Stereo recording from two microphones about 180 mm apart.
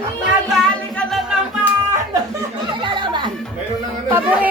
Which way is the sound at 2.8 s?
25° right (ahead or behind).